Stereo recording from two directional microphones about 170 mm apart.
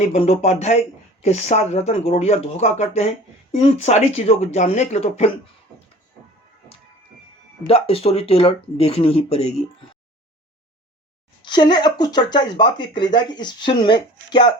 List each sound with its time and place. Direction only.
0.1 s speech: 35° left (ahead or behind)
7.7 s speech: 35° left (ahead or behind)
11.4 s speech: 25° left (ahead or behind)